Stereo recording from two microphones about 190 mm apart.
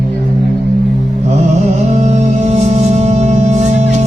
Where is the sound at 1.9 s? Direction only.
35° right (ahead or behind).